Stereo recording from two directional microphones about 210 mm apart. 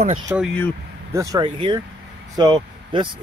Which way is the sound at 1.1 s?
15° right (ahead or behind).